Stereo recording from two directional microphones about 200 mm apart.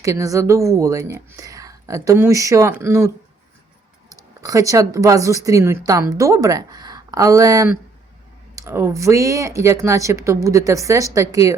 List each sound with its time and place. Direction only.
0.0 s speech: 15° right (ahead or behind)
4.1 s speech: 15° right (ahead or behind)